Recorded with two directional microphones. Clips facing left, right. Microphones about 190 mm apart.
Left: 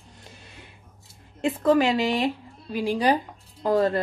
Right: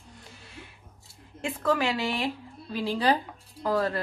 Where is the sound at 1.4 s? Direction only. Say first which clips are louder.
Left 6 dB; 20° left (ahead or behind).